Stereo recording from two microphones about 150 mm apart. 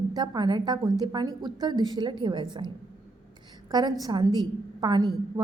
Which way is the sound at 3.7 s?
25° right (ahead or behind).